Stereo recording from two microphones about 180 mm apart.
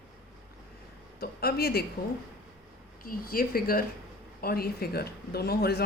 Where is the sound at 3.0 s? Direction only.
55° left (ahead or behind).